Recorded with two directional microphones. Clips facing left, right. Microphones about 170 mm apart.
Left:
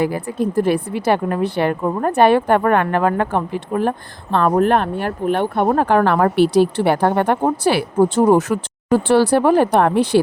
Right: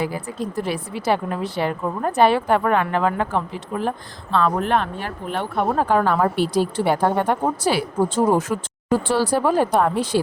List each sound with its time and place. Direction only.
0.0 s speech: 55° left (ahead or behind)